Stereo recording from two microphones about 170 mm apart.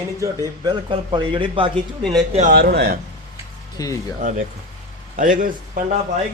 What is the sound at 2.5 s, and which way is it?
Speech, 70° right (ahead or behind).